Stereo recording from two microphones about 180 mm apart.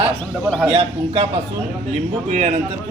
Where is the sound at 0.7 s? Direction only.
30° right (ahead or behind).